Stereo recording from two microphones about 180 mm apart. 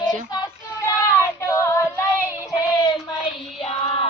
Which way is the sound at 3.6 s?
30° left (ahead or behind).